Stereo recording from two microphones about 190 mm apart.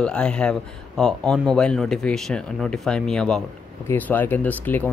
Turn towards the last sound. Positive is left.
turn(degrees=10)  # may be behind; listen again after turning